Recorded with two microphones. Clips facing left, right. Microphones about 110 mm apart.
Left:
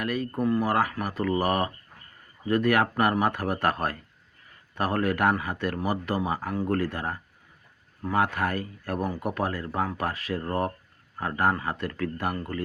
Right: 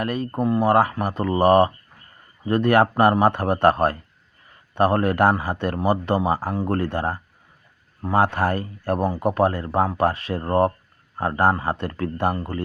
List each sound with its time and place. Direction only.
0.0 s speech: 30° right (ahead or behind)